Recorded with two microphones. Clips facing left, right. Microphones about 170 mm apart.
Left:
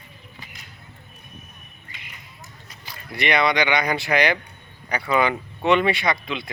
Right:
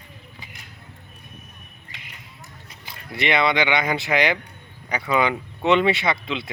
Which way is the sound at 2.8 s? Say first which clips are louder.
Even; 20° right (ahead or behind).